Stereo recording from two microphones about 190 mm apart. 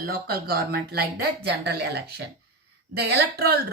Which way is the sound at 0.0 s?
55° right (ahead or behind).